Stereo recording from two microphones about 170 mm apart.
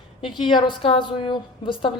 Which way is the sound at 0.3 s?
30° left (ahead or behind).